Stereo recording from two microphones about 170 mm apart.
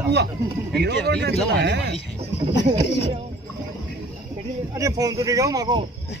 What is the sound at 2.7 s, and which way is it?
Speech, 30° right (ahead or behind).